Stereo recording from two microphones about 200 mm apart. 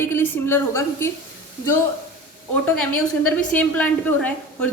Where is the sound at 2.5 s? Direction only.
5° left (ahead or behind).